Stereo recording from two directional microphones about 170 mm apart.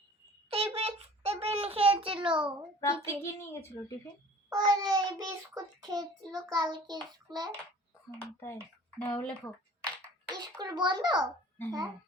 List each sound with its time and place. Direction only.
0.5 s a sound: 35° right (ahead or behind)
2.8 s a woman's voice: 15° left (ahead or behind)
4.5 s a child's voice: 20° right (ahead or behind)
8.4 s a woman's voice: 10° left (ahead or behind)
10.4 s a child's voice: 25° right (ahead or behind)